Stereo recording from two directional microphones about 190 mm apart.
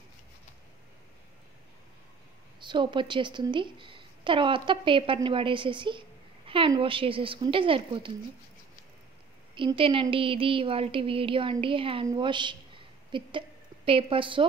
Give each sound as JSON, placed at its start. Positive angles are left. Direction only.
{"t": 2.6, "sound": "a woman's voice", "side_deg": -25}
{"t": 9.6, "sound": "a woman's voice", "side_deg": -25}